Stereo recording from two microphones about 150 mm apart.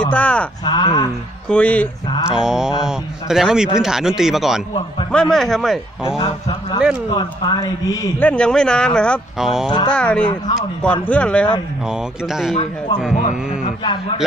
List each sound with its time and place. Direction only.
0.1 s speech: 10° left (ahead or behind)
0.7 s speech: 35° left (ahead or behind)
1.5 s speech: 10° left (ahead or behind)
2.2 s a man's voice: 5° right (ahead or behind)
6.0 s a man's voice: 30° left (ahead or behind)
8.2 s a man's voice: 10° left (ahead or behind)
9.7 s speech: 35° left (ahead or behind)
9.9 s speech: 5° left (ahead or behind)
11.9 s a man's voice: centre (ahead or behind)
13.1 s speech: 55° left (ahead or behind)